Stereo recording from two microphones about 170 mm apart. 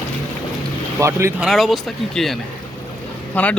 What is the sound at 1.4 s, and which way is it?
Speech, centre (ahead or behind).